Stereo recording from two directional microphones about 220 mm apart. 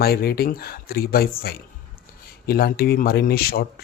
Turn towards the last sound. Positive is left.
turn(degrees=45)  # may be behind; listen again after turning